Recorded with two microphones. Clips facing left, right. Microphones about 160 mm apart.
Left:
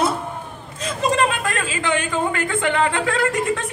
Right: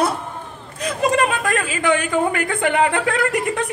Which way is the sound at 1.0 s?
25° left (ahead or behind).